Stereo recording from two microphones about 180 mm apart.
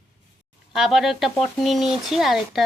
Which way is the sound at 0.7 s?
Centre (ahead or behind).